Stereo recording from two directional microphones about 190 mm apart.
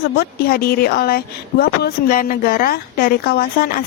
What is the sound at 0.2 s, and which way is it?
Speech, 55° left (ahead or behind).